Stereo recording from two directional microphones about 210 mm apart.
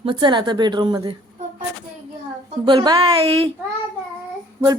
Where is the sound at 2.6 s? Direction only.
20° right (ahead or behind).